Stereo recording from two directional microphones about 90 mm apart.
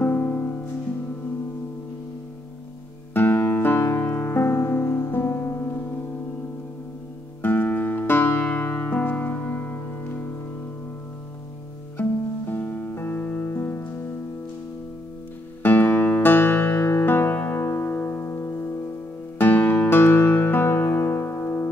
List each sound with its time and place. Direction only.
0.0 s music: 20° left (ahead or behind)
3.1 s music: 25° left (ahead or behind)
7.4 s music: 20° left (ahead or behind)
12.0 s music: 20° left (ahead or behind)
15.6 s music: 20° left (ahead or behind)